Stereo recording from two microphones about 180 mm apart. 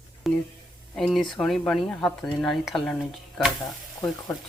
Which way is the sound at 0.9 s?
Centre (ahead or behind).